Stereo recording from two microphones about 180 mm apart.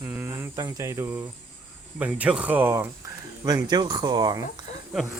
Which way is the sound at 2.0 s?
5° right (ahead or behind).